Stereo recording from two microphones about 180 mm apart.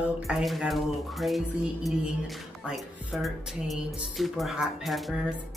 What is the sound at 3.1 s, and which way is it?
Speech, centre (ahead or behind).